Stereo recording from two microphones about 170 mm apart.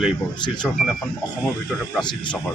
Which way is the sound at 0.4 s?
25° left (ahead or behind).